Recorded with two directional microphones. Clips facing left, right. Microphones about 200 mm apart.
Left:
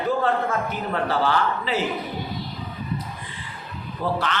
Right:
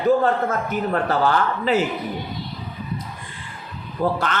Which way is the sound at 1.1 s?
50° right (ahead or behind).